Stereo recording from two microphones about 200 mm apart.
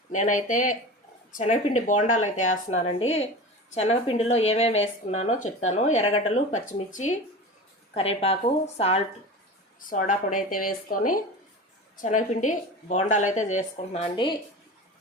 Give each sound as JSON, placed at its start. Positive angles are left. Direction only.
{"t": 0.1, "sound": "a woman's voice", "side_deg": 40}